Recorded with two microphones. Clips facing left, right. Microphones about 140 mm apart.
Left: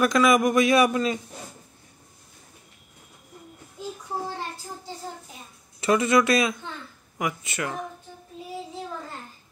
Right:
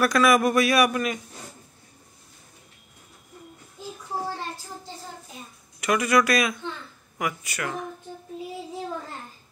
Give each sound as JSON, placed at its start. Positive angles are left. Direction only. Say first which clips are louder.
{"t": 0.0, "sound": "a man's voice", "louder": "even", "side_deg": 20}
{"t": 5.8, "sound": "a man's voice", "louder": "left 1 dB", "side_deg": 30}